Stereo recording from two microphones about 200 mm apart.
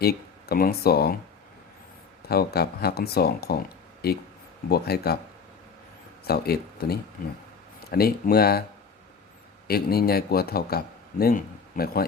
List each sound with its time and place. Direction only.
0.0 s speech: 50° left (ahead or behind)
2.2 s a man's voice: 50° left (ahead or behind)
6.2 s a man's voice: 50° left (ahead or behind)
9.6 s a man's voice: 50° left (ahead or behind)